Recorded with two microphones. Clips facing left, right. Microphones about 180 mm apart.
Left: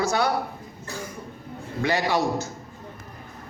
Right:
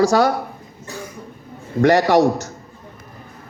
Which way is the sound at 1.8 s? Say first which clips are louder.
Right 11 dB; 70° right (ahead or behind).